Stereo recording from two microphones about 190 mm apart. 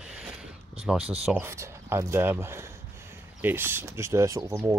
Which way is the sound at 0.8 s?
5° right (ahead or behind).